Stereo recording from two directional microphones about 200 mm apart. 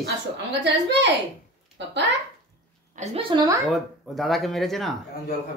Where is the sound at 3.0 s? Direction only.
30° right (ahead or behind).